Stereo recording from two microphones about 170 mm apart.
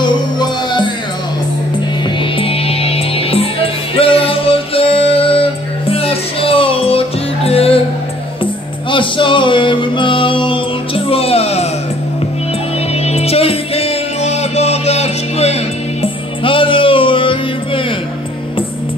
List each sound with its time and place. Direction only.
0.0 s music: 25° left (ahead or behind)
2.3 s music: 35° left (ahead or behind)
8.9 s music: 30° left (ahead or behind)
13.0 s music: 35° left (ahead or behind)